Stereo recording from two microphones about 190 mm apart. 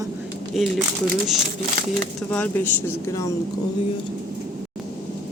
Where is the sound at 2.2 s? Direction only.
10° left (ahead or behind).